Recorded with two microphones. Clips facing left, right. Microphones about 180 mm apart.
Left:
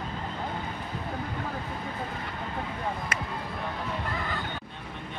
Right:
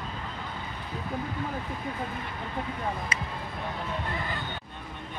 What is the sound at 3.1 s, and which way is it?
Speech, 55° left (ahead or behind).